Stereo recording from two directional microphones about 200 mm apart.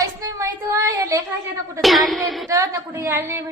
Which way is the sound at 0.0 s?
15° right (ahead or behind).